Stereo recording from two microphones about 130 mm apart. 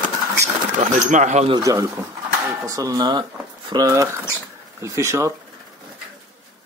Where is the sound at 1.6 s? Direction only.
25° right (ahead or behind).